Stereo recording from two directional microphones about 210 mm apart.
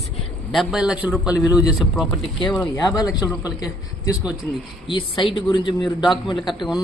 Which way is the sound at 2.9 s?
20° left (ahead or behind).